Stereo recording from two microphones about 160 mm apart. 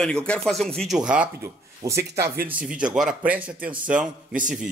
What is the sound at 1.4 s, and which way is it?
Speech, 20° right (ahead or behind).